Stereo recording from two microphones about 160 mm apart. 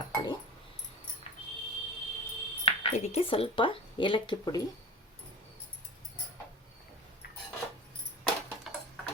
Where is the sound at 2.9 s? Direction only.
40° left (ahead or behind); by 4.6 s 25° left (ahead or behind).